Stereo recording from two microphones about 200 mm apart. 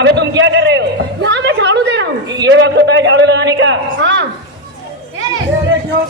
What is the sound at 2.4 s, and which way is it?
A man's voice, 65° right (ahead or behind).